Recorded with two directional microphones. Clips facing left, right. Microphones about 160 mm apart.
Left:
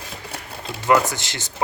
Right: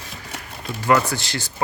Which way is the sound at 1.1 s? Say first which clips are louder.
Right 4 dB; 20° left (ahead or behind).